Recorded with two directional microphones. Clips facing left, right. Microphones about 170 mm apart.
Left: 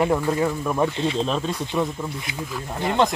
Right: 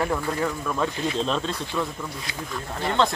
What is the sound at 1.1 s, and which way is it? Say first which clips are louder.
Speech: left 2 dB; 5° left (ahead or behind).